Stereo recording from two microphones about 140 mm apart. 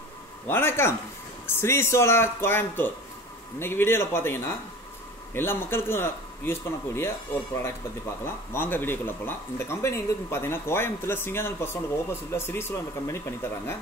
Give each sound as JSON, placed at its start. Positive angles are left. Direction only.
{"t": 0.5, "sound": "speech", "side_deg": 15}
{"t": 8.5, "sound": "speech", "side_deg": 15}